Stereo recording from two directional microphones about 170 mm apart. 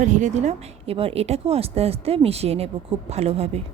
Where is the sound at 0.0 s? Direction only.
45° right (ahead or behind).